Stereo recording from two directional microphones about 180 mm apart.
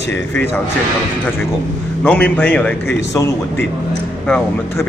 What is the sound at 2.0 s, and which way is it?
A man's voice, 10° left (ahead or behind).